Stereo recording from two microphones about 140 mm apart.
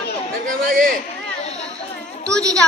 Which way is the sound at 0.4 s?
80° right.